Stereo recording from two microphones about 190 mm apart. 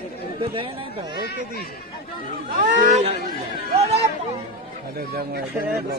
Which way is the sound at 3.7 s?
35° right (ahead or behind).